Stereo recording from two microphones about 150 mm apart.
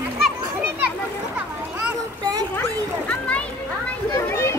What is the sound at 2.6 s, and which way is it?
Children playing, 15° left (ahead or behind).